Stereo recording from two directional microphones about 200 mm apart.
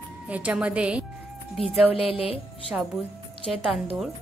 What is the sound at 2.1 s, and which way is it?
Speech, 30° left (ahead or behind).